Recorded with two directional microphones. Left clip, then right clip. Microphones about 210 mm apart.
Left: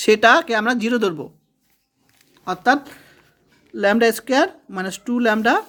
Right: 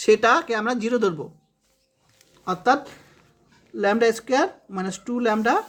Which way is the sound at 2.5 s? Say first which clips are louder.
Left 2 dB; 30° left (ahead or behind).